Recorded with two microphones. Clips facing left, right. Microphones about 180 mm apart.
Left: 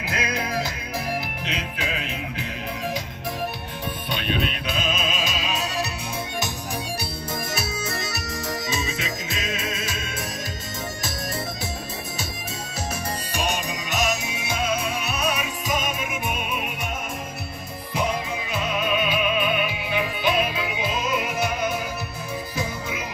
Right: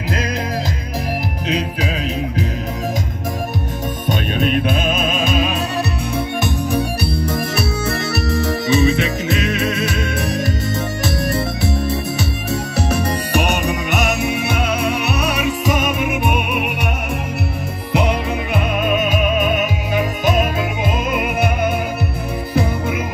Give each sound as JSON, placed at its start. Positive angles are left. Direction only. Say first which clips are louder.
{"t": 1.5, "sound": "music", "louder": "right 10 dB", "side_deg": -40}
{"t": 4.1, "sound": "music", "louder": "right 9 dB", "side_deg": -45}
{"t": 7.3, "sound": "music", "louder": "right 9 dB", "side_deg": -65}
{"t": 12.7, "sound": "music", "louder": "right 9 dB", "side_deg": -65}
{"t": 17.9, "sound": "music", "louder": "right 7 dB", "side_deg": -65}